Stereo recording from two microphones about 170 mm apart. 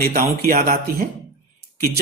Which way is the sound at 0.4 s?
55° right (ahead or behind).